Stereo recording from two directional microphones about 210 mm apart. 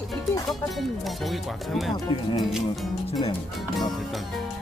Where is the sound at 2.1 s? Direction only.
25° left (ahead or behind).